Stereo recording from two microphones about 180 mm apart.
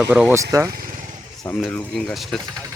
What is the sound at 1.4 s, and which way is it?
Speech, 5° left (ahead or behind).